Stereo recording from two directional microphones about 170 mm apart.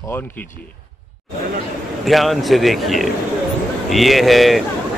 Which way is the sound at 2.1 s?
Centre (ahead or behind).